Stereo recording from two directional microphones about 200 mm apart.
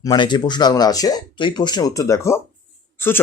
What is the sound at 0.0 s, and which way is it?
Speech, 20° left (ahead or behind).